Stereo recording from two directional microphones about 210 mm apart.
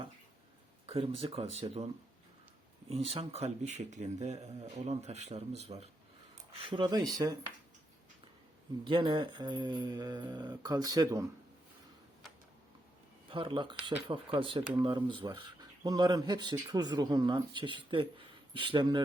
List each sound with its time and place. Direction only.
0.9 s speech: 25° right (ahead or behind)
2.9 s speech: 30° right (ahead or behind)
8.8 s speech: 25° right (ahead or behind)
13.3 s speech: 25° right (ahead or behind)